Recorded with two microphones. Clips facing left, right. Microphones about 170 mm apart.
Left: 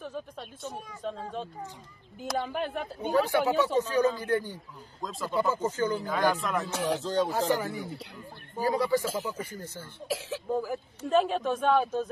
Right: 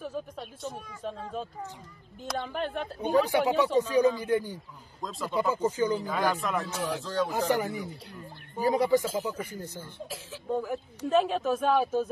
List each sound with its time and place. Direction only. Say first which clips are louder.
0.0 s speech: right 2 dB; 5° right (ahead or behind)
3.0 s speech: right 1 dB; 15° right (ahead or behind)
6.0 s speech: left 1 dB; centre (ahead or behind)
6.9 s speech: left 3 dB; 20° left (ahead or behind)
7.2 s speech: even; 20° right (ahead or behind)
10.0 s speech: left 8 dB; 80° left
11.1 s speech: even; centre (ahead or behind)